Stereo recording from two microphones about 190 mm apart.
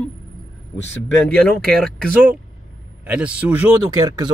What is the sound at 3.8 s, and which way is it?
Speech, 20° right (ahead or behind).